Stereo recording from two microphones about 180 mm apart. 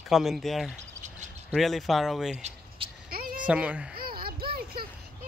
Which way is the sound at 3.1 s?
55° right (ahead or behind).